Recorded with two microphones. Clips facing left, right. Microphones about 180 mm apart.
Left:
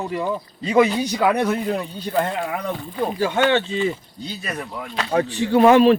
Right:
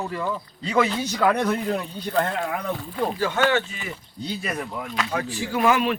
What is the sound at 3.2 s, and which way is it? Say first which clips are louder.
Speech: left 6 dB; 15° left (ahead or behind).